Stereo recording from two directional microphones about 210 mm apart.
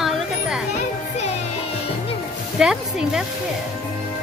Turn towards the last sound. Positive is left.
turn(degrees=-5)  # may be behind; listen again after turning